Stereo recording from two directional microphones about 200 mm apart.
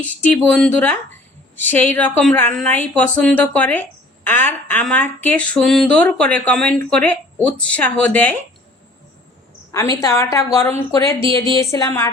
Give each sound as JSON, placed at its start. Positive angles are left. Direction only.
{"t": 0.0, "sound": "speech", "side_deg": 10}
{"t": 9.7, "sound": "speech", "side_deg": 20}